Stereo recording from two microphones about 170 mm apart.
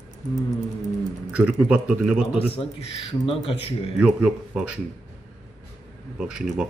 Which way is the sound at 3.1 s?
35° left (ahead or behind).